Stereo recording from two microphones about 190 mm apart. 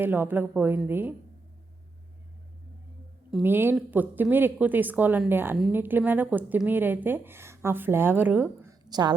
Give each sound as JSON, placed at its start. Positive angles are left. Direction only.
{"t": 0.0, "sound": "a woman's voice", "side_deg": -10}
{"t": 3.4, "sound": "a woman's voice", "side_deg": -10}
{"t": 8.8, "sound": "a sound", "side_deg": -20}